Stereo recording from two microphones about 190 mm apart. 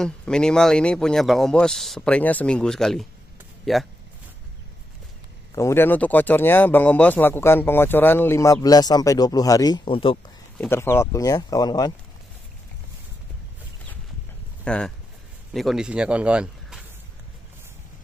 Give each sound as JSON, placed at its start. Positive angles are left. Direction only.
{"t": 0.0, "sound": "a man's voice", "side_deg": 5}
{"t": 5.5, "sound": "speech", "side_deg": 15}
{"t": 10.6, "sound": "speech", "side_deg": 15}
{"t": 14.6, "sound": "speech", "side_deg": 5}